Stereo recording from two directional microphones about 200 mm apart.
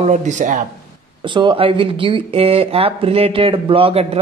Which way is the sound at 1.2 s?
25° right (ahead or behind).